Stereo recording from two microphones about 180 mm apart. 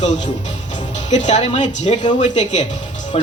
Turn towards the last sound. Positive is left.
turn(degrees=35)  # may be behind; listen again after turning